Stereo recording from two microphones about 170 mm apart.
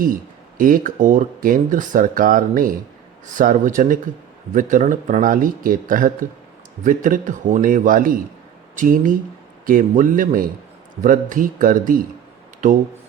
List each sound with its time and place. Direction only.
0.0 s speech: 55° right (ahead or behind)